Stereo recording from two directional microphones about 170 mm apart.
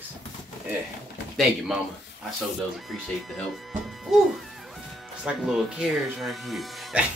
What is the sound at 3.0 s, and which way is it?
Speech, centre (ahead or behind).